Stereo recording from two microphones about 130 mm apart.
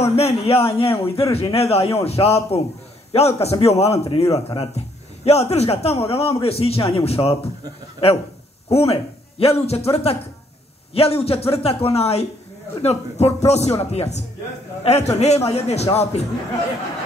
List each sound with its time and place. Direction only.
0.0 s a man's voice: 50° left (ahead or behind)